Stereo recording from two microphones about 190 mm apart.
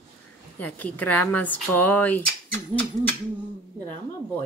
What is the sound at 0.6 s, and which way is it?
Cutlery, 10° left (ahead or behind).